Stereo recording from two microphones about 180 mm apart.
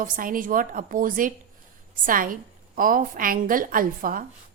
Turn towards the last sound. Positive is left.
turn(degrees=-50)  # may be behind; listen again after turning